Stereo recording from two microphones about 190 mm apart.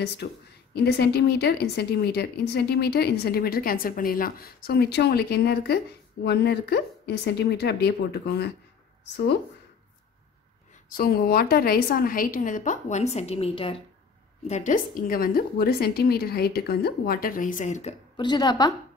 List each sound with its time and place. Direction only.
0.2 s a woman's voice: 55° left (ahead or behind)
10.9 s a woman's voice: 50° left (ahead or behind); by 13.7 s 30° left (ahead or behind)
14.5 s a woman's voice: 40° left (ahead or behind)
18.1 s a woman's voice: 20° left (ahead or behind)